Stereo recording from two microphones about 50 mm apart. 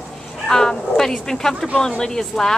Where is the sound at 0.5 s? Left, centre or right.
Centre.